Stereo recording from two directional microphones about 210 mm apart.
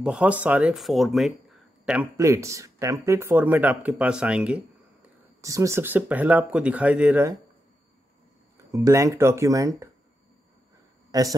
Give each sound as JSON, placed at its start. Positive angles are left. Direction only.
{"t": 0.0, "sound": "speech", "side_deg": -5}
{"t": 8.7, "sound": "speech", "side_deg": -15}
{"t": 11.1, "sound": "speech", "side_deg": -15}